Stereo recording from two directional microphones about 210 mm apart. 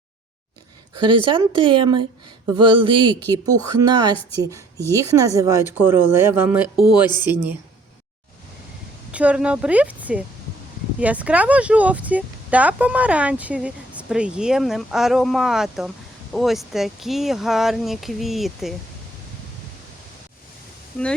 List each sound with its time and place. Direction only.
0.9 s speech: 20° right (ahead or behind)
6.7 s speech: 20° left (ahead or behind)
9.1 s speech: 5° right (ahead or behind)